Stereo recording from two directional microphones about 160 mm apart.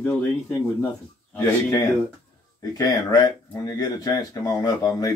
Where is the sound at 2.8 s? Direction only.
25° left (ahead or behind).